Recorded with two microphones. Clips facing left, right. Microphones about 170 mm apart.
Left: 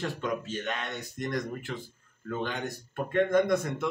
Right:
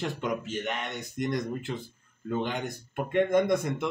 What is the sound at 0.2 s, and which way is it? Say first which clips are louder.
Speech: right 1 dB; 15° right (ahead or behind).